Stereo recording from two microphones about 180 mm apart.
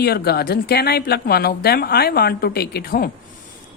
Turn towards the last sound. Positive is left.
turn(degrees=55)  # may be behind; listen again after turning